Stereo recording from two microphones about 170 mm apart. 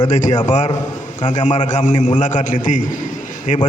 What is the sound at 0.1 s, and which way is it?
A man's voice, 45° left (ahead or behind).